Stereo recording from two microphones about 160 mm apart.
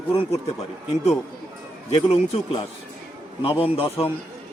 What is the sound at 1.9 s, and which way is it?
Speech, 40° left (ahead or behind).